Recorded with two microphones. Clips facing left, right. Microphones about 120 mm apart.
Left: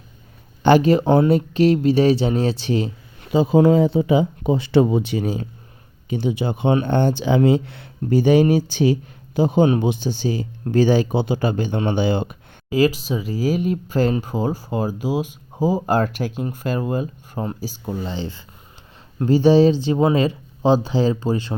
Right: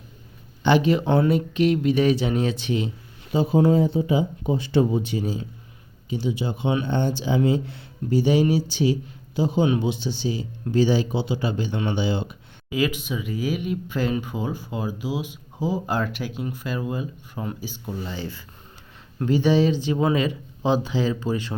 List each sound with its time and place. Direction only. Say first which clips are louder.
0.6 s speech: left 5 dB; 45° left (ahead or behind)
3.5 s speech: left 4 dB; 90° left; by 12.4 s 55° left (ahead or behind)
12.7 s speech: left 6 dB; 35° left (ahead or behind)